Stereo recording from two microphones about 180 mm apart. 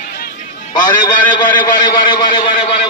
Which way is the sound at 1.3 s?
25° left (ahead or behind).